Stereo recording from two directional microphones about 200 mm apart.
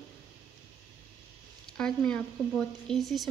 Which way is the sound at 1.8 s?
5° left (ahead or behind).